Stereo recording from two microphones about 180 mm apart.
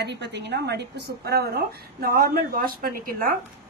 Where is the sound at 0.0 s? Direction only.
70° right (ahead or behind); by 3.3 s 55° right (ahead or behind).